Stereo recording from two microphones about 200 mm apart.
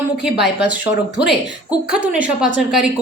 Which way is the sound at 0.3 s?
Centre (ahead or behind).